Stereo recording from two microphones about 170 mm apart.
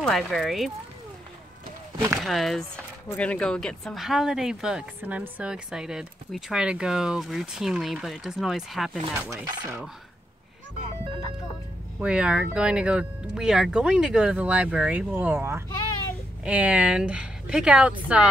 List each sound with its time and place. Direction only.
0.0 s speech: centre (ahead or behind)
2.1 s speech: centre (ahead or behind)
9.4 s dishes: 20° right (ahead or behind)
12.0 s speech: 5° right (ahead or behind)